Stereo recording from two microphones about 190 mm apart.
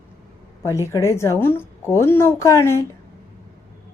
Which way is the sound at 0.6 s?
15° left (ahead or behind).